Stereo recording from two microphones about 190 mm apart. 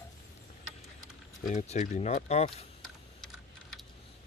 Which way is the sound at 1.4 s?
40° left (ahead or behind).